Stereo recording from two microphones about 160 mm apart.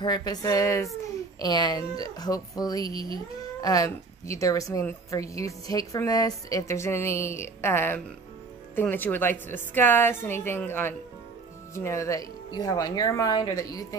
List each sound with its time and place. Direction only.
0.0 s a woman's voice: 25° left (ahead or behind)